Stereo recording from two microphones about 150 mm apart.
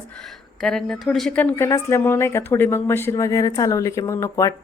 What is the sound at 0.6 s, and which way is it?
Speech, 5° left (ahead or behind).